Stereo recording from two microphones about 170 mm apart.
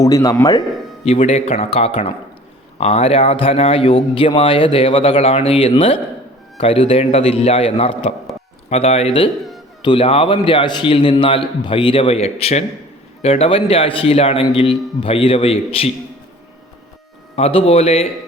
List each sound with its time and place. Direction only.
0.0 s speech: 20° left (ahead or behind)
1.0 s speech: 35° left (ahead or behind)
17.3 s speech: 35° left (ahead or behind)